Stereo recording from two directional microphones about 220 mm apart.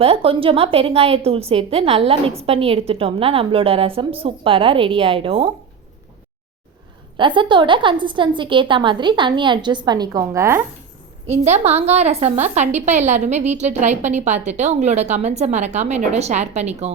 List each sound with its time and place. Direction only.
0.0 s a woman's voice: 25° right (ahead or behind)
7.2 s a woman's voice: 20° right (ahead or behind)
11.3 s a woman's voice: 30° right (ahead or behind)